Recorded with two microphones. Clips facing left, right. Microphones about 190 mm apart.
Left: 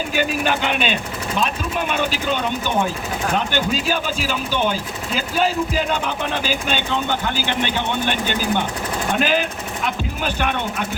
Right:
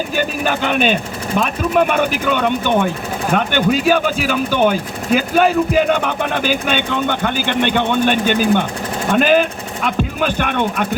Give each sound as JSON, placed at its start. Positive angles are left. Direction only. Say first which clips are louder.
{"t": 0.2, "sound": "speech", "louder": "right 1 dB", "side_deg": -45}